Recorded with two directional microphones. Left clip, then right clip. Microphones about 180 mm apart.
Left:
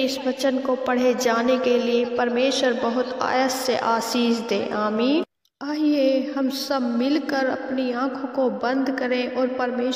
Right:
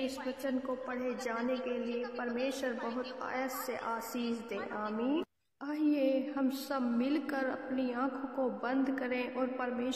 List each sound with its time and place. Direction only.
0.0 s a woman's voice: 45° left (ahead or behind)
2.6 s a woman's voice: 45° left (ahead or behind)